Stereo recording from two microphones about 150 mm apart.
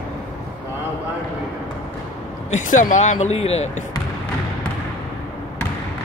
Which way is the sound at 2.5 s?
60° left (ahead or behind).